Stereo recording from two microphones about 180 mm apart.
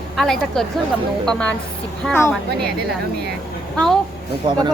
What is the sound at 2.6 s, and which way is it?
Speech, 60° right (ahead or behind).